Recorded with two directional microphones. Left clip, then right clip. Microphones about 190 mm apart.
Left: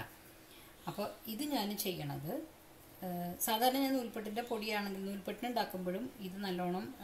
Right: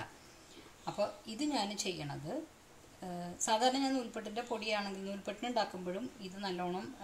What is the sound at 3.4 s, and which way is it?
A woman's voice, 20° right (ahead or behind).